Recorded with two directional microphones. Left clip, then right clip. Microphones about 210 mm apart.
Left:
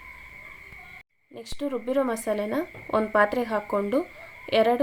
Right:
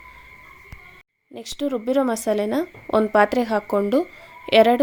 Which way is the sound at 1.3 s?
35° right (ahead or behind).